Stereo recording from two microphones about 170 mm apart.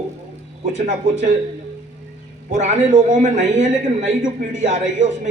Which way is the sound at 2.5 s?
45° right (ahead or behind).